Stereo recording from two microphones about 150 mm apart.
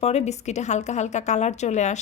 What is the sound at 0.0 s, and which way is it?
A woman's voice, 45° left (ahead or behind).